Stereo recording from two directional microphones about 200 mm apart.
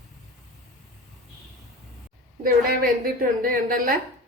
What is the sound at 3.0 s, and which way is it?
Speech, 45° right (ahead or behind).